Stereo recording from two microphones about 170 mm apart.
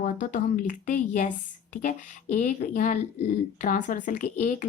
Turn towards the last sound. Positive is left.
turn(degrees=50)  # may be behind; listen again after turning